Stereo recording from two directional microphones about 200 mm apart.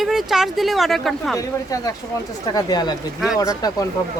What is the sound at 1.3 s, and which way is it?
Speech, 15° left (ahead or behind).